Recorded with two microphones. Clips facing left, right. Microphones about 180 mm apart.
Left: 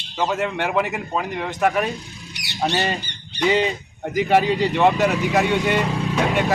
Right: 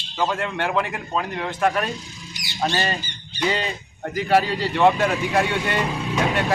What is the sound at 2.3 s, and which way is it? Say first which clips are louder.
Squawk: even; 70° left (ahead or behind).